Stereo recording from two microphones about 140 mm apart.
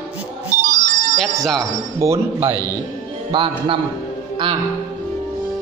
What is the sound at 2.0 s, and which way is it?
Speech, 20° right (ahead or behind).